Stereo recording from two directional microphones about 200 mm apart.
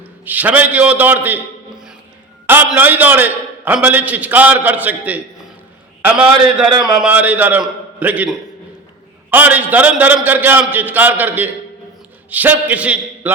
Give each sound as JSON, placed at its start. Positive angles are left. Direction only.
{"t": 0.3, "sound": "a man's voice", "side_deg": -10}
{"t": 6.7, "sound": "speech", "side_deg": -20}
{"t": 7.0, "sound": "a man's voice", "side_deg": -10}